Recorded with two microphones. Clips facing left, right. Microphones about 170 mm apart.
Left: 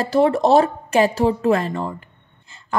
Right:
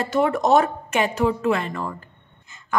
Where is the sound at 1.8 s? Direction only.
15° left (ahead or behind).